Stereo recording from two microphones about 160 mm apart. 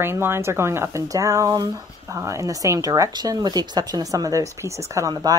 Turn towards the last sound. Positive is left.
turn(degrees=-20)  # may be behind; listen again after turning